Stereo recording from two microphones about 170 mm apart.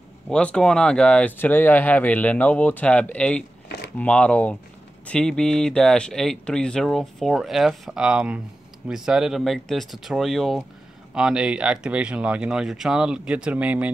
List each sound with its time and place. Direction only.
0.3 s speech: 5° left (ahead or behind)
3.6 s a sound: 75° left (ahead or behind)
4.0 s speech: 5° left (ahead or behind); by 13.9 s 10° right (ahead or behind)